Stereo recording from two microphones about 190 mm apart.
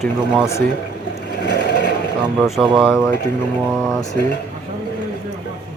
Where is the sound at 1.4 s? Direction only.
60° left (ahead or behind).